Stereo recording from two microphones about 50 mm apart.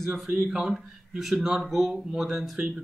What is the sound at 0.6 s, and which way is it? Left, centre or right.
A man's voice, centre.